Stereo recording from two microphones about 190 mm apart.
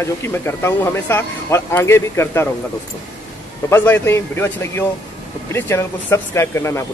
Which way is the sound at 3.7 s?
10° left (ahead or behind).